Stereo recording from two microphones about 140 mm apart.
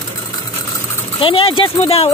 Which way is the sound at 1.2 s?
40° left (ahead or behind).